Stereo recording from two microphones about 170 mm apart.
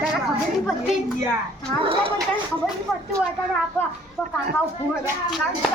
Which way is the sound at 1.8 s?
30° right (ahead or behind).